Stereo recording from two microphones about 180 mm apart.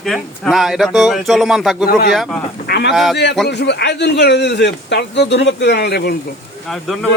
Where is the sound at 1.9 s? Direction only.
55° left (ahead or behind).